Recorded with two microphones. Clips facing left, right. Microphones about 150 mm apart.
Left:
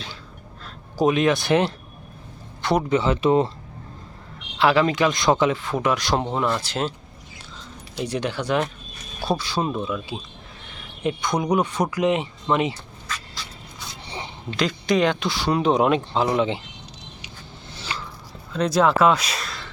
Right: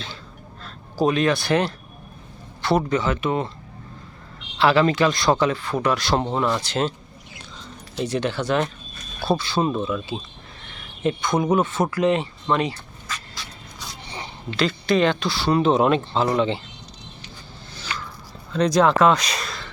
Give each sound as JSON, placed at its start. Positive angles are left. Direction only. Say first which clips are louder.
{"t": 0.6, "sound": "speech", "louder": "left 1 dB", "side_deg": 15}
{"t": 4.5, "sound": "speech", "louder": "right 1 dB", "side_deg": 10}
{"t": 7.9, "sound": "speech", "louder": "right 2 dB", "side_deg": 10}
{"t": 9.6, "sound": "speech", "louder": "right 2 dB", "side_deg": 0}
{"t": 14.0, "sound": "zipper", "louder": "left 2 dB", "side_deg": 30}
{"t": 14.5, "sound": "speech", "louder": "right 1 dB", "side_deg": 15}
{"t": 17.7, "sound": "a sound", "louder": "even", "side_deg": 25}
{"t": 18.5, "sound": "speech", "louder": "right 2 dB", "side_deg": 5}